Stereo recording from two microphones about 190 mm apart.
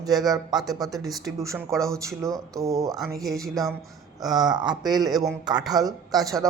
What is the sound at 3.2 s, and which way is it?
Speech, centre (ahead or behind).